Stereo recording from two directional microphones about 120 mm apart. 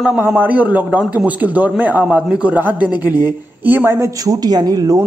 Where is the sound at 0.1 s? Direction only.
15° right (ahead or behind).